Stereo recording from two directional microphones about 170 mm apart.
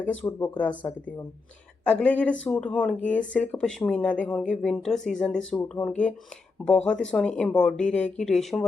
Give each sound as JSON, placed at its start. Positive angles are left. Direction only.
{"t": 0.0, "sound": "speech", "side_deg": 10}
{"t": 0.7, "sound": "speech", "side_deg": 25}
{"t": 1.8, "sound": "speech", "side_deg": 10}